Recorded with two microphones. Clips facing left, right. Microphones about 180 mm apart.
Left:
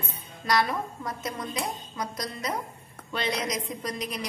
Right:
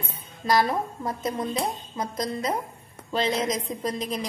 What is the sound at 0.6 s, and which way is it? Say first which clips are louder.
A woman's voice: right 4 dB; 30° right (ahead or behind).